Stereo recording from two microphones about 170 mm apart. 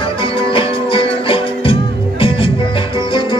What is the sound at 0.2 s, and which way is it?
Music, 30° left (ahead or behind).